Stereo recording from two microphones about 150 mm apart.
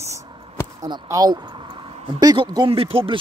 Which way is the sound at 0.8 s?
25° right (ahead or behind).